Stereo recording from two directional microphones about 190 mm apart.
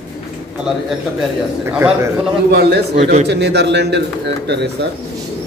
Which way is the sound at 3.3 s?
65° right (ahead or behind).